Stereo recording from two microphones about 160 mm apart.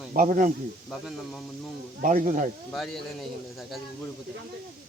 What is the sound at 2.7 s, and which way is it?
A man's voice, centre (ahead or behind).